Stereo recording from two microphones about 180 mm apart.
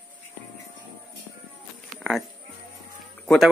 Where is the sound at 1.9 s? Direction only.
Centre (ahead or behind).